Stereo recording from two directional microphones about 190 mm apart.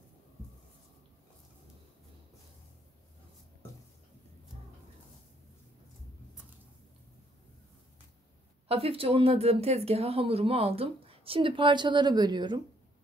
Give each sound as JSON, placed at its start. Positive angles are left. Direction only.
{"t": 8.6, "sound": "speech", "side_deg": -30}